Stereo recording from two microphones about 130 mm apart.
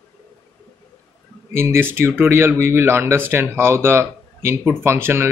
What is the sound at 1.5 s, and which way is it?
Speech, 20° right (ahead or behind).